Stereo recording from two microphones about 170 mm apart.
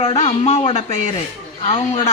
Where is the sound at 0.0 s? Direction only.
35° left (ahead or behind).